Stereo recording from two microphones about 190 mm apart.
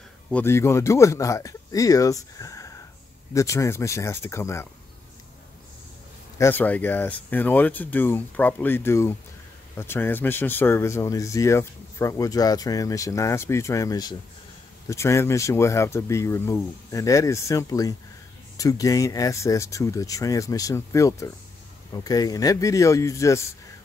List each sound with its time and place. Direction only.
0.3 s speech: 10° left (ahead or behind)
6.3 s speech: 10° left (ahead or behind)